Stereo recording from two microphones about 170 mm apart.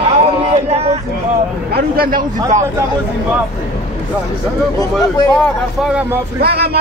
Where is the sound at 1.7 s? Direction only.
60° right (ahead or behind).